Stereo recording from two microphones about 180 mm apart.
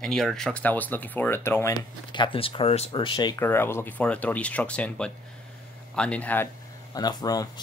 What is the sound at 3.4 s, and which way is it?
Speech, 10° left (ahead or behind).